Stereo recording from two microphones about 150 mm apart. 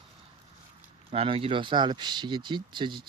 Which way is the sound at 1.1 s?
40° right (ahead or behind).